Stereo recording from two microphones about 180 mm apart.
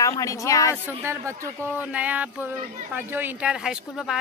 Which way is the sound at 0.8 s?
15° right (ahead or behind).